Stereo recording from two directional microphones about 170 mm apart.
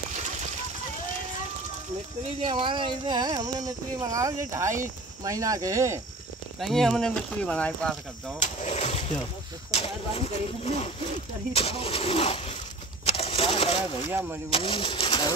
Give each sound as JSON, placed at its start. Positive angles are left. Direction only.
{"t": 2.4, "sound": "speech", "side_deg": -30}
{"t": 6.6, "sound": "speech", "side_deg": 0}
{"t": 8.4, "sound": "speech", "side_deg": 45}
{"t": 13.0, "sound": "vehicle", "side_deg": 35}
{"t": 14.5, "sound": "speech", "side_deg": 35}